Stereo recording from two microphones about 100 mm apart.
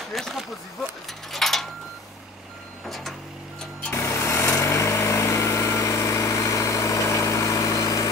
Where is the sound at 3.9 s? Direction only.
30° left (ahead or behind).